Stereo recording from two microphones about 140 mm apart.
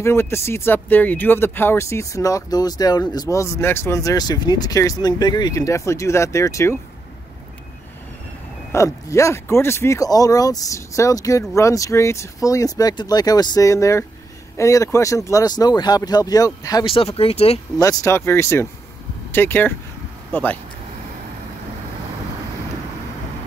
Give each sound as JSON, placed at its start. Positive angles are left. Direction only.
{"t": 0.0, "sound": "speech", "side_deg": 20}
{"t": 8.7, "sound": "speech", "side_deg": 20}
{"t": 16.8, "sound": "speech", "side_deg": 40}
{"t": 17.7, "sound": "speech", "side_deg": 25}